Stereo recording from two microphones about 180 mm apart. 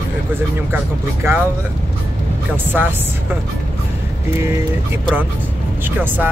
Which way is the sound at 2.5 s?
10° right (ahead or behind).